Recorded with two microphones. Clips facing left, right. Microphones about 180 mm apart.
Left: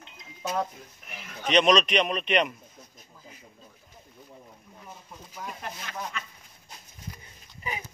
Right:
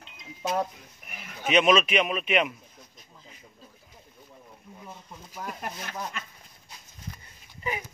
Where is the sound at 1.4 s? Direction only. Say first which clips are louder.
Even; 5° right (ahead or behind).